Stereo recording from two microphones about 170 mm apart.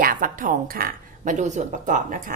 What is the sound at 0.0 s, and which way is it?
Speech, 55° right (ahead or behind).